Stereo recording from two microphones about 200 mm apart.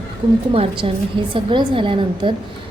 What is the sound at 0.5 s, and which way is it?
A woman's voice, 25° right (ahead or behind).